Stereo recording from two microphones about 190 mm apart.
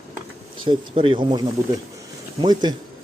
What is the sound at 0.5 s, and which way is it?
Speech, 25° right (ahead or behind).